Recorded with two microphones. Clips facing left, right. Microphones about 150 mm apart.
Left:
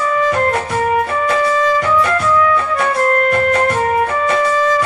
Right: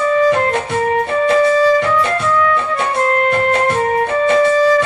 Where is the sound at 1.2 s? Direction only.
30° right (ahead or behind).